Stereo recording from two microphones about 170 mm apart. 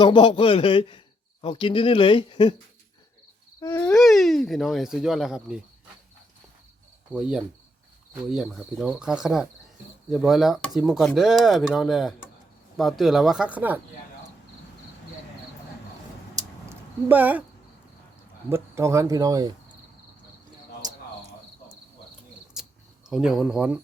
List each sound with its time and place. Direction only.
0.0 s a man's voice: 30° left (ahead or behind)
3.6 s a sound: 20° left (ahead or behind)
3.8 s speech: centre (ahead or behind)
7.1 s speech: 5° right (ahead or behind)
16.3 s a sound: 15° right (ahead or behind)
18.4 s speech: 15° right (ahead or behind)
22.5 s cricket: 5° right (ahead or behind)
23.0 s speech: 5° right (ahead or behind)